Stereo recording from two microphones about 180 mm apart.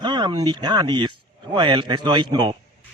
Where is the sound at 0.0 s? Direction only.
25° right (ahead or behind).